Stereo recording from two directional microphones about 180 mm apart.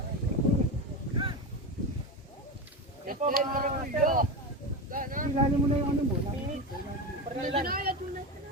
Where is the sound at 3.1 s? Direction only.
50° right (ahead or behind).